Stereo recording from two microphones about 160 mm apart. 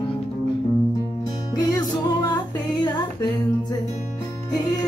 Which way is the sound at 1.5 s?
25° left (ahead or behind).